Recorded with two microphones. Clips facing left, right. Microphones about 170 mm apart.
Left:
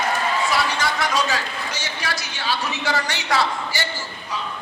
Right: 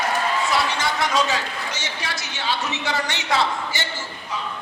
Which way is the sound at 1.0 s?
20° right (ahead or behind).